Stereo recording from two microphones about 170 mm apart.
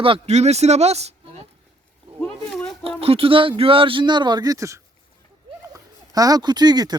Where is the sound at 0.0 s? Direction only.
35° right (ahead or behind).